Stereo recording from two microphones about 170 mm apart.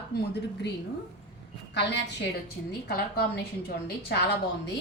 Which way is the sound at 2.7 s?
65° left (ahead or behind).